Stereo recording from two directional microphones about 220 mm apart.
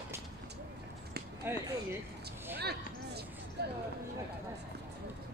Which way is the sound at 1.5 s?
10° right (ahead or behind).